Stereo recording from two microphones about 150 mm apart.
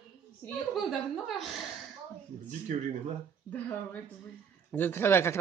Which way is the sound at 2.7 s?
50° right (ahead or behind).